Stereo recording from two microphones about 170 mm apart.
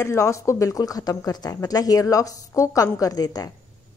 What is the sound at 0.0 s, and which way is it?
A woman's voice, 15° left (ahead or behind).